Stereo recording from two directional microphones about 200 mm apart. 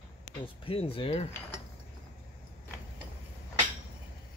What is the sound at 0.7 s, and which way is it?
Speech, 30° left (ahead or behind).